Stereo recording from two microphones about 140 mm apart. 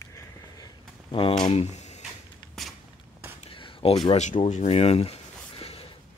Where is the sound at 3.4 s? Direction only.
40° left (ahead or behind).